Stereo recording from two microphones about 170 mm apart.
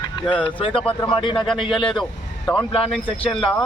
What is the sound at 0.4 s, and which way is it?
Speech, 30° left (ahead or behind).